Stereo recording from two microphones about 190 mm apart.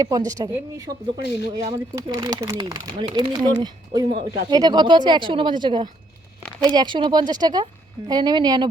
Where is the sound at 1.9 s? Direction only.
20° right (ahead or behind).